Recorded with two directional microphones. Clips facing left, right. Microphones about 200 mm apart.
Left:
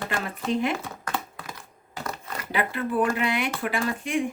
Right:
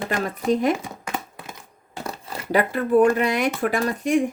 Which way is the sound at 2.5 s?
45° right (ahead or behind).